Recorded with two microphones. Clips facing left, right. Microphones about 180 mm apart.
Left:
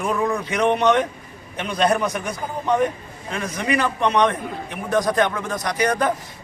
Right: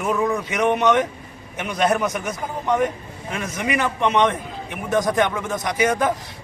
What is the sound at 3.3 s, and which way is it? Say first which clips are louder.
A man's voice: left 1 dB; 15° right (ahead or behind).